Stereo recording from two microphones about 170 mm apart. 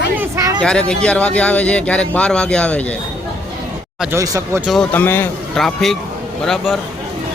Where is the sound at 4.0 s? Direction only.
15° right (ahead or behind).